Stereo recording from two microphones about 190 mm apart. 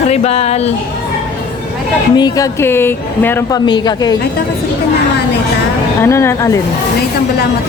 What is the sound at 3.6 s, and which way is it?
Speech, 25° left (ahead or behind).